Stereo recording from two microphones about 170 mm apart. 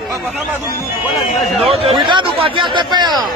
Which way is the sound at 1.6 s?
35° right (ahead or behind).